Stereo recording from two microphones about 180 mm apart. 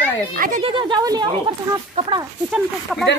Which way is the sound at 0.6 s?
30° right (ahead or behind).